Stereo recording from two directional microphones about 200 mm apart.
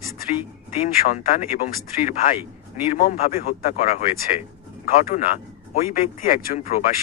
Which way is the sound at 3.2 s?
35° left (ahead or behind).